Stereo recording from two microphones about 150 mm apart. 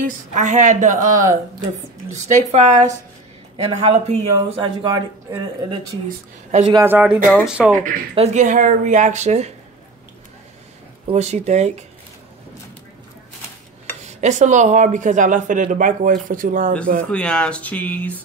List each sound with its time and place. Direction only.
0.0 s speech: 55° right (ahead or behind)
4.6 s speech: 25° right (ahead or behind)
6.8 s speech: 10° right (ahead or behind)
7.7 s speech: 65° right (ahead or behind)
8.1 s speech: 45° right (ahead or behind)
11.1 s speech: 50° right (ahead or behind)
14.0 s speech: 50° right (ahead or behind)
17.1 s speech: 5° left (ahead or behind)